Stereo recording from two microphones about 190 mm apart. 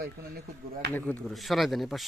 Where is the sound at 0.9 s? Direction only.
5° left (ahead or behind).